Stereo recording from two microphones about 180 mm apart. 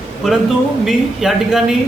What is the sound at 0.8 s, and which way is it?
Speech, centre (ahead or behind).